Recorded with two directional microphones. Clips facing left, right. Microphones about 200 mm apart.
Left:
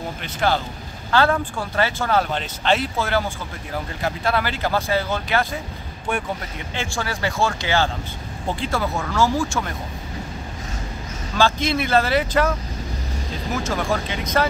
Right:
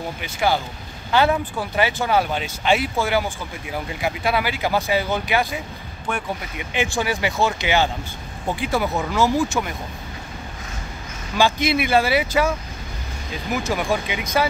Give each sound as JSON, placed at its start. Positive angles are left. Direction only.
{"t": 0.2, "sound": "speech", "side_deg": -10}
{"t": 6.7, "sound": "speech", "side_deg": -15}
{"t": 11.3, "sound": "speech", "side_deg": -15}